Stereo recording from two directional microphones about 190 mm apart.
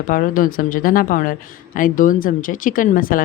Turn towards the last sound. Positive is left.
turn(degrees=50)  # may be behind; listen again after turning